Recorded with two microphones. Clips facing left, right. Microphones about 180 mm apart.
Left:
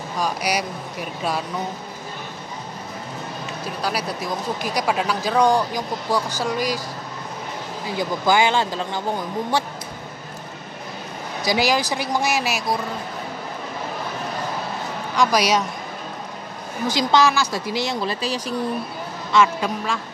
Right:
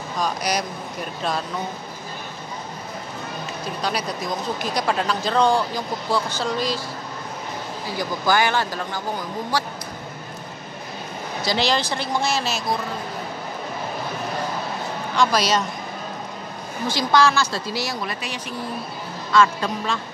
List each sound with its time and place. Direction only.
0.2 s speech: 10° left (ahead or behind)
3.8 s speech: 5° left (ahead or behind)
8.0 s a man's voice: 20° left (ahead or behind)
11.4 s speech: 10° left (ahead or behind)
15.1 s speech: 15° left (ahead or behind)
16.8 s speech: 20° left (ahead or behind)
19.3 s speech: 15° left (ahead or behind)